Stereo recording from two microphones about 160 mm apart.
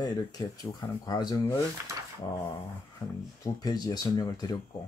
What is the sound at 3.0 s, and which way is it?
Speech, 25° left (ahead or behind).